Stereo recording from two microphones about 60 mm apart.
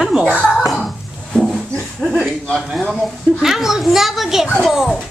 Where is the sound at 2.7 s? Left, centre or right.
Centre.